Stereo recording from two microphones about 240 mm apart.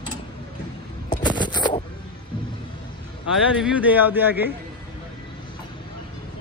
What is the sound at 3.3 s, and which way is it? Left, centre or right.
A man's voice, centre.